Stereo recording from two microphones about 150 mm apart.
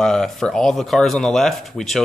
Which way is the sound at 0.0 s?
5° left (ahead or behind).